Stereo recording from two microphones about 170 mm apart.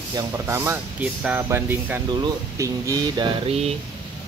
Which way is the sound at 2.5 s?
20° right (ahead or behind).